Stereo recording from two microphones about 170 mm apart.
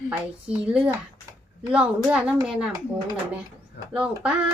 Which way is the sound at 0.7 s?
5° right (ahead or behind).